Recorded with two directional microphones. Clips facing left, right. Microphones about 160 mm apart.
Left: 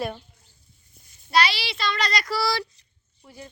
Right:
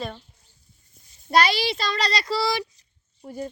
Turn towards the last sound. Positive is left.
turn(degrees=-40)  # may be behind; listen again after turning